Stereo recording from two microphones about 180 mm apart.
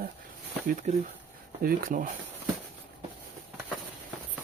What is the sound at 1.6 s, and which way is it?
Speech, 50° right (ahead or behind).